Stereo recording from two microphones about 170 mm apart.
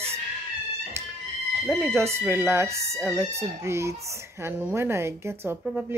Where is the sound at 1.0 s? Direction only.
15° right (ahead or behind).